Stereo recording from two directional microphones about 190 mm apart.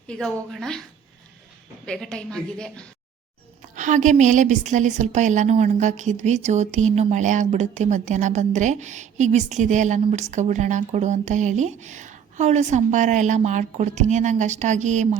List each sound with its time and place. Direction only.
0.1 s a woman's voice: 5° left (ahead or behind)
1.9 s a woman's voice: 5° left (ahead or behind)
3.8 s a woman's voice: 40° right (ahead or behind)